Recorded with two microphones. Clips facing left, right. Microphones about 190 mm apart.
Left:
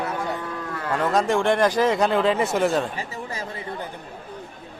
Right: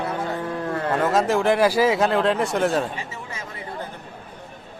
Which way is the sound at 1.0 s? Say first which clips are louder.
Even; centre (ahead or behind).